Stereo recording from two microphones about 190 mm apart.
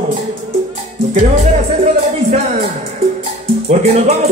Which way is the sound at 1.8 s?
35° right (ahead or behind).